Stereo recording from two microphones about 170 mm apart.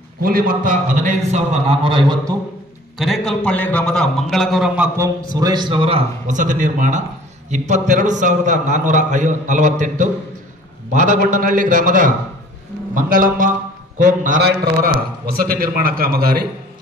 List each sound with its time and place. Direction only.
0.2 s a man's voice: 55° right (ahead or behind); by 2.3 s 25° right (ahead or behind)
3.0 s a man's voice: centre (ahead or behind); by 14.4 s 50° right (ahead or behind)
14.4 s a man's voice: 60° right (ahead or behind)